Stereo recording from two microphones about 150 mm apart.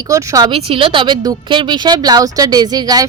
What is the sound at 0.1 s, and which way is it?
Speech, 25° right (ahead or behind).